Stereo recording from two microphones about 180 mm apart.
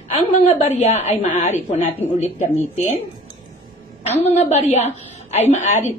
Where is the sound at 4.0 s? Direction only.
35° left (ahead or behind).